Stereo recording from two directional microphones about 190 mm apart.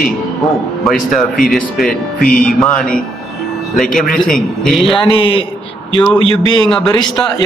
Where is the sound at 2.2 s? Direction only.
45° left (ahead or behind).